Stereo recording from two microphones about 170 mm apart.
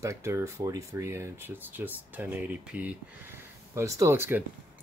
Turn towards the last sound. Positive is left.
turn(degrees=-15)  # may be behind; listen again after turning